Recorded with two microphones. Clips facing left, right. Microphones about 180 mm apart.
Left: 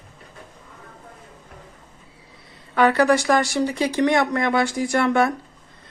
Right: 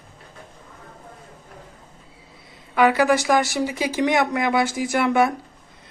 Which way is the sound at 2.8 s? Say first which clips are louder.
Even; centre (ahead or behind).